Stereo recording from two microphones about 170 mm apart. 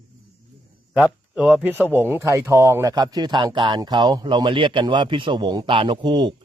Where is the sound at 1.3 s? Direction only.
10° right (ahead or behind).